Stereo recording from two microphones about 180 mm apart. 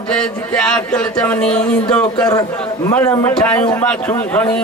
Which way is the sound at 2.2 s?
20° left (ahead or behind).